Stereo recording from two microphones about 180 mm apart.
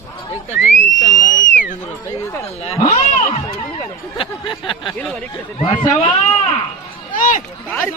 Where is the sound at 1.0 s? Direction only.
45° left (ahead or behind).